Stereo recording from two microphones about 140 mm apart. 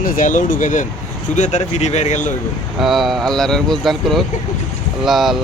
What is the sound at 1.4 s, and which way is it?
Speech, 55° left (ahead or behind).